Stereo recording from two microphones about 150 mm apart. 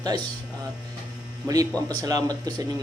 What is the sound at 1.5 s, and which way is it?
Speech, 25° right (ahead or behind).